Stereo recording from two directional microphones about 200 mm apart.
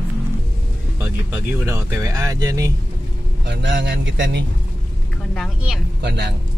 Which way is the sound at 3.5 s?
65° right (ahead or behind).